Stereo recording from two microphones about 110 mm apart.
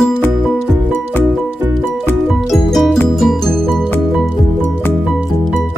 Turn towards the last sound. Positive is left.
turn(degrees=0)  # may be behind; listen again after turning